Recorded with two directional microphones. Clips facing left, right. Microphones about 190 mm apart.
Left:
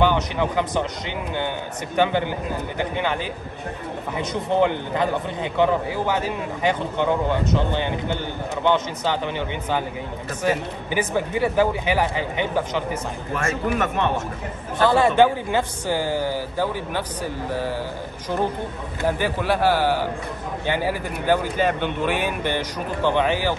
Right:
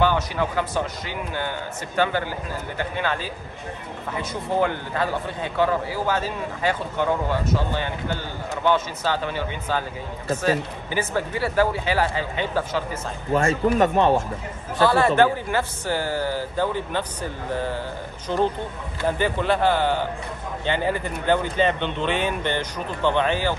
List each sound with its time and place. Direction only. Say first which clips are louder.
0.0 s a man's voice: left 1 dB; 20° left (ahead or behind)
13.3 s speech: right 5 dB; 30° right (ahead or behind)
14.8 s speech: left 1 dB; 15° left (ahead or behind)